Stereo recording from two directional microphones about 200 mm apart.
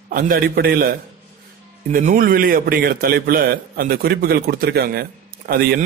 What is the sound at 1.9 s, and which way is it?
A man's voice, 45° right (ahead or behind).